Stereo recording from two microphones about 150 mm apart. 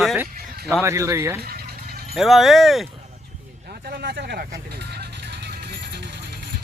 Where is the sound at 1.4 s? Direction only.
90° right.